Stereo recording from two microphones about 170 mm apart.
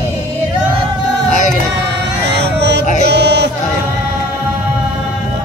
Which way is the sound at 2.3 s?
90° right.